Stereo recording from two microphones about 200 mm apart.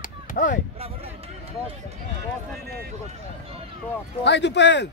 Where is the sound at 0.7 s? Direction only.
30° right (ahead or behind).